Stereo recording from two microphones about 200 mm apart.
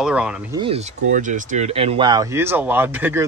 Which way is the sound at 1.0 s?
40° right (ahead or behind).